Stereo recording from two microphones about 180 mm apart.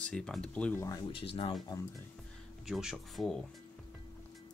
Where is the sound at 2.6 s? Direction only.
Centre (ahead or behind).